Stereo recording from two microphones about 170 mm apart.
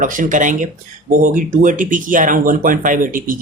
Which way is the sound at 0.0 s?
50° right (ahead or behind).